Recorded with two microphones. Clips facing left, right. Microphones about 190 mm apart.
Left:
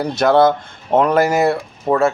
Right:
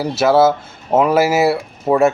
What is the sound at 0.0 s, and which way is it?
Speech, 5° right (ahead or behind).